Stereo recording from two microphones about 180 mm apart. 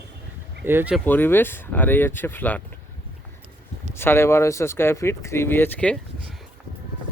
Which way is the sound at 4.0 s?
15° left (ahead or behind).